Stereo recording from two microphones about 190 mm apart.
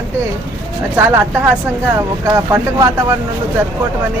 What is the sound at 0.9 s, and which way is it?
Speech, 10° right (ahead or behind).